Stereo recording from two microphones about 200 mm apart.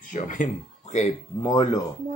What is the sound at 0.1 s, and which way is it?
Speech, 40° left (ahead or behind).